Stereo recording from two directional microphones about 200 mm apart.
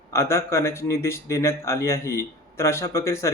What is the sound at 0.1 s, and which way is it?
Speech, 15° left (ahead or behind).